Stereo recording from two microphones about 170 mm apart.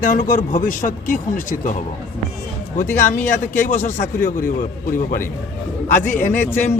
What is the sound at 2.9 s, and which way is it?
A man's voice, 50° left (ahead or behind).